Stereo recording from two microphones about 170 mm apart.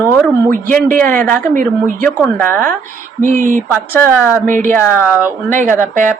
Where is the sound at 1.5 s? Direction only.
55° right (ahead or behind).